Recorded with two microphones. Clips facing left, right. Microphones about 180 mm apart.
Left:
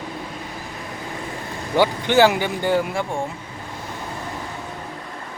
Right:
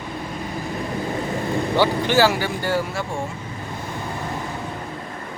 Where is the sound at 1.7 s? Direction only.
15° left (ahead or behind).